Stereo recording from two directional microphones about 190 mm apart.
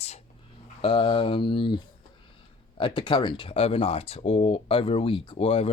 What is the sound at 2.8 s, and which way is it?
Speech, 25° left (ahead or behind).